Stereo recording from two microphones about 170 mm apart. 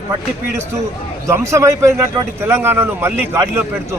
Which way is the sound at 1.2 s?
15° right (ahead or behind).